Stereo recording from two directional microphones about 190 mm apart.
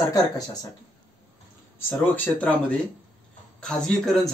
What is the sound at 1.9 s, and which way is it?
Speech, 10° left (ahead or behind).